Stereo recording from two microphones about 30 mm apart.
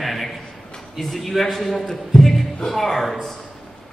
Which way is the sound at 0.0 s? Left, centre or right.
Centre.